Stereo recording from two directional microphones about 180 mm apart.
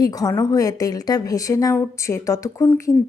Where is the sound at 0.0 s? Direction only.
20° left (ahead or behind).